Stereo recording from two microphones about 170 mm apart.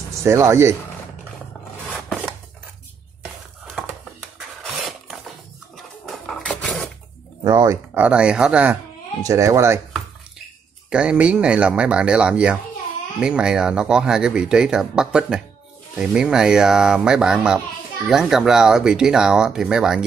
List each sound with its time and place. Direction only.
0.2 s speech: 15° right (ahead or behind)
4.4 s printer: centre (ahead or behind)
6.0 s a sound: 5° left (ahead or behind)
7.4 s speech: 20° right (ahead or behind)
9.2 s speech: 20° right (ahead or behind)
10.9 s speech: 5° right (ahead or behind)